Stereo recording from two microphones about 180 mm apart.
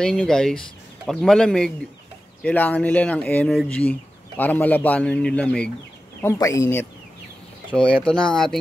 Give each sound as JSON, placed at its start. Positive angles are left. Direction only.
{"t": 0.0, "sound": "a man's voice", "side_deg": 5}
{"t": 6.2, "sound": "a man's voice", "side_deg": 15}